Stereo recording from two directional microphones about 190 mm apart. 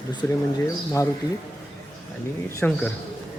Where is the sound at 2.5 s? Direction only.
15° left (ahead or behind).